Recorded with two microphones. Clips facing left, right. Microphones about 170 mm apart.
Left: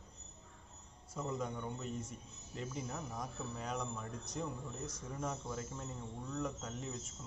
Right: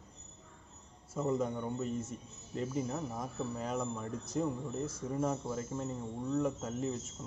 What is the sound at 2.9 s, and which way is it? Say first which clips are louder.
Speech: right 5 dB; 25° right (ahead or behind).